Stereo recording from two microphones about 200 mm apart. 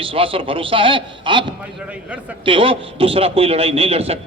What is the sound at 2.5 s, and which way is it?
A man's voice, 25° right (ahead or behind).